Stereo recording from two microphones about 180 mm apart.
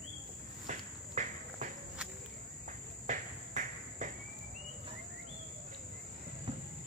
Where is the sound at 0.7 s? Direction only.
40° right (ahead or behind).